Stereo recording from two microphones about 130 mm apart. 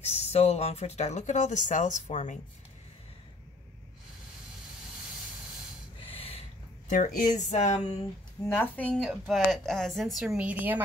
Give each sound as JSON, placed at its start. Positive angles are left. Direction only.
{"t": 0.0, "sound": "speech", "side_deg": 55}
{"t": 6.0, "sound": "a sound", "side_deg": 45}
{"t": 6.9, "sound": "speech", "side_deg": 85}
{"t": 8.5, "sound": "a woman's voice", "side_deg": 10}